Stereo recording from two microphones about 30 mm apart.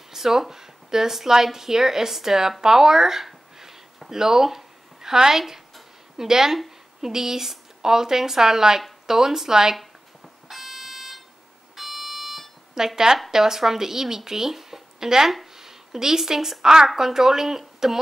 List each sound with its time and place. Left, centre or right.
0.1 s a woman's voice: centre
10.5 s smoke detector: centre
11.7 s alarm: centre
12.7 s a woman's voice: centre